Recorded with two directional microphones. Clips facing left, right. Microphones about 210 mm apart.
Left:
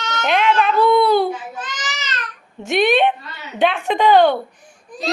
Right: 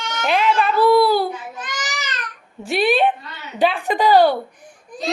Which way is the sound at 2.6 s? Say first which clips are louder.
Left 2 dB; centre (ahead or behind).